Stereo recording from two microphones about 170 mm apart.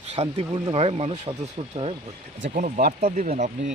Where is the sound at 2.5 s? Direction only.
50° right (ahead or behind).